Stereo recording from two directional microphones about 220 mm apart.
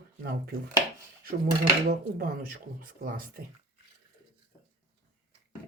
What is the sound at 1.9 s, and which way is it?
Speech, 40° right (ahead or behind).